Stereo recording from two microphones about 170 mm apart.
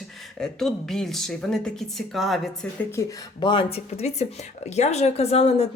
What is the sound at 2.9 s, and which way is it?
A woman's voice, 25° left (ahead or behind).